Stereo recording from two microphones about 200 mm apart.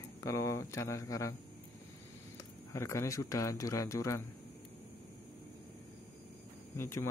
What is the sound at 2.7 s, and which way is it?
Speech, 15° left (ahead or behind).